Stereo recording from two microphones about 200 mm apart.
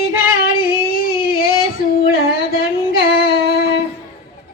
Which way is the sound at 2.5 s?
50° left (ahead or behind).